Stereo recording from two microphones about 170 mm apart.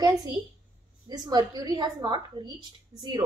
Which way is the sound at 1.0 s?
25° right (ahead or behind).